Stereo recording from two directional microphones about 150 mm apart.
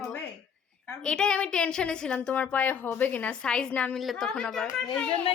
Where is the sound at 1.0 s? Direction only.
5° left (ahead or behind).